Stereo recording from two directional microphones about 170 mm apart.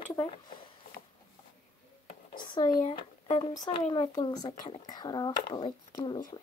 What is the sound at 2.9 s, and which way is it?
Speech, 30° left (ahead or behind).